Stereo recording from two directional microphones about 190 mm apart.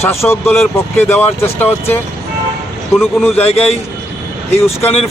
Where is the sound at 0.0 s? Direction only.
15° left (ahead or behind).